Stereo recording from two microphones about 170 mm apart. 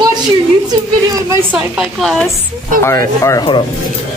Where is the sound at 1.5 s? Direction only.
Centre (ahead or behind).